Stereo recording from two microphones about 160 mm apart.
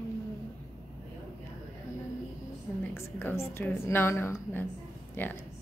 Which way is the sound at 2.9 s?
15° left (ahead or behind).